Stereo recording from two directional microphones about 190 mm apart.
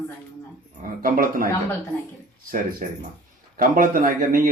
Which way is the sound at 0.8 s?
50° right (ahead or behind).